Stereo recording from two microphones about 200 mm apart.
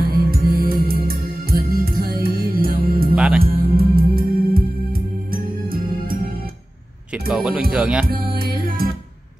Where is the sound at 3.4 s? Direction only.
45° right (ahead or behind).